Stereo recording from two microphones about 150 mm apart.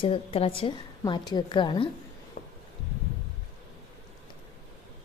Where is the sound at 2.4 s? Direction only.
65° left (ahead or behind).